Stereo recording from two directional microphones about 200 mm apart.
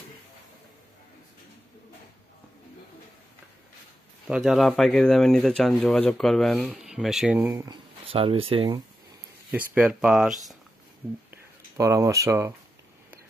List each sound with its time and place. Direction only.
4.3 s speech: centre (ahead or behind)
8.1 s speech: 25° right (ahead or behind)
9.5 s speech: 5° right (ahead or behind)
11.2 s a sound: 15° right (ahead or behind)